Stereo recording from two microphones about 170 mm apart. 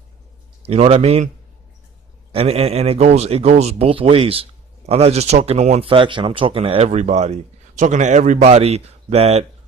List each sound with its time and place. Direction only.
0.6 s speech: 35° right (ahead or behind)
2.3 s speech: 35° right (ahead or behind)